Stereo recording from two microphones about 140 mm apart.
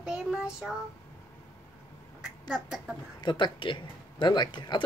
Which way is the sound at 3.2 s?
35° left (ahead or behind).